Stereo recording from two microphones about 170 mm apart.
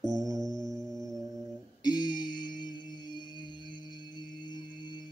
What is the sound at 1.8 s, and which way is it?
Music, 25° left (ahead or behind).